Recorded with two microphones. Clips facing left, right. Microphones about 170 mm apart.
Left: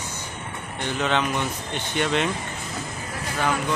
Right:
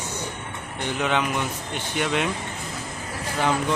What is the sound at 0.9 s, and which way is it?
Speech, 10° right (ahead or behind).